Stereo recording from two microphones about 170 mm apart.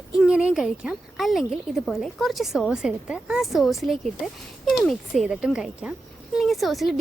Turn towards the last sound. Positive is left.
turn(degrees=0)  # may be behind; listen again after turning